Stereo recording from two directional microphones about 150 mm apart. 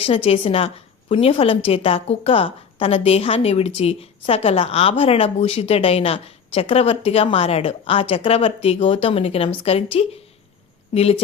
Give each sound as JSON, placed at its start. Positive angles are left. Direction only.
{"t": 0.0, "sound": "a woman's voice", "side_deg": 40}